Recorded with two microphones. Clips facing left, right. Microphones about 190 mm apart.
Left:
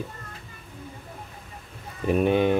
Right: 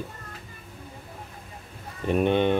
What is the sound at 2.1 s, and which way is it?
Speech, 5° left (ahead or behind).